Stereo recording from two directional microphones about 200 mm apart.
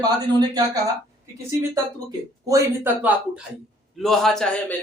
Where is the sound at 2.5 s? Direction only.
15° right (ahead or behind).